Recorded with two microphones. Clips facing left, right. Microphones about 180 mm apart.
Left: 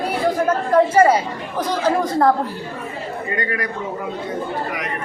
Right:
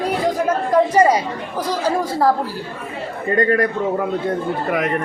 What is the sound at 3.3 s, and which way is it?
Speech, 40° right (ahead or behind).